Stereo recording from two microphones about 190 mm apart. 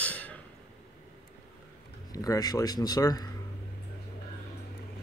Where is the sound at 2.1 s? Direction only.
20° left (ahead or behind).